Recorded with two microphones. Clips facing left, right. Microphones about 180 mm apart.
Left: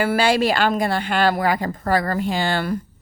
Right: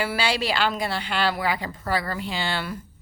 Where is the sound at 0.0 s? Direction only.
50° left (ahead or behind).